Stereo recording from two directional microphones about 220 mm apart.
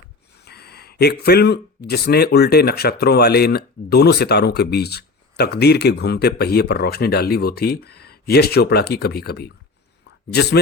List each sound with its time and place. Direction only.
0.3 s speech: 45° left (ahead or behind)